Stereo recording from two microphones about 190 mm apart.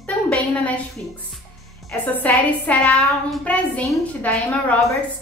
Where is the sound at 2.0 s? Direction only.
10° left (ahead or behind).